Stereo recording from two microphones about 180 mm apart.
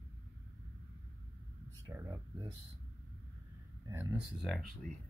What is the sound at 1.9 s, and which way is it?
Speech, 15° right (ahead or behind).